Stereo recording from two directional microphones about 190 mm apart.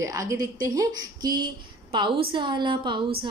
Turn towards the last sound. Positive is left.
turn(degrees=-25)  # may be behind; listen again after turning